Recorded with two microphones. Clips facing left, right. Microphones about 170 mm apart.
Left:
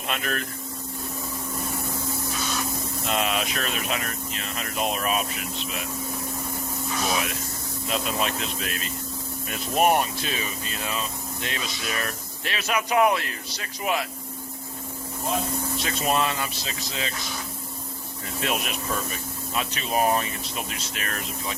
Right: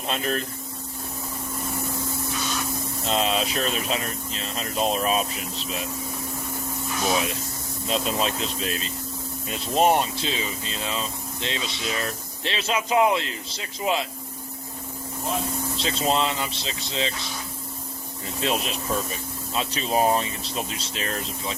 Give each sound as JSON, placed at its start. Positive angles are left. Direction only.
{"t": 0.1, "sound": "speech", "side_deg": -30}
{"t": 3.1, "sound": "speech", "side_deg": -30}
{"t": 7.9, "sound": "speech", "side_deg": -30}
{"t": 15.8, "sound": "speech", "side_deg": -25}
{"t": 18.3, "sound": "speech", "side_deg": -30}